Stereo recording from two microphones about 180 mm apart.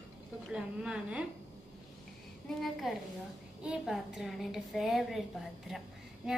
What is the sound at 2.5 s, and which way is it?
A woman's voice, centre (ahead or behind).